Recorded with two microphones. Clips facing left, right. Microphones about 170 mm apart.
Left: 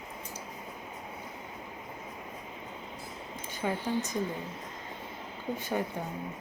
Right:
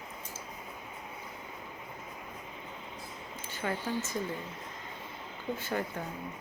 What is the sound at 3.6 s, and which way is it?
Speech, 15° left (ahead or behind).